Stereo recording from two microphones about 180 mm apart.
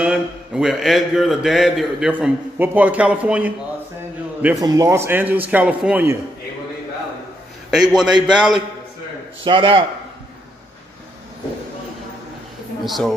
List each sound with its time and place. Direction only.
0.0 s speech: 5° right (ahead or behind)
4.6 s a man's voice: 20° right (ahead or behind)
7.9 s speech: centre (ahead or behind)
9.4 s speech: 25° right (ahead or behind)
12.8 s speech: centre (ahead or behind)